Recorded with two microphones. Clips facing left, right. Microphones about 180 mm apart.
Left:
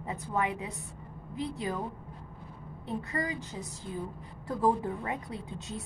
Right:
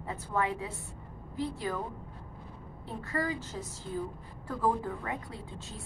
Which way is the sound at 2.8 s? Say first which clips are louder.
Even; 20° left (ahead or behind).